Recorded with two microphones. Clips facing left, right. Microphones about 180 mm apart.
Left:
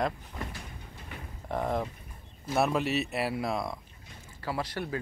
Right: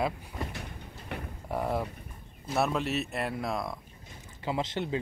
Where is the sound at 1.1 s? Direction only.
65° right (ahead or behind).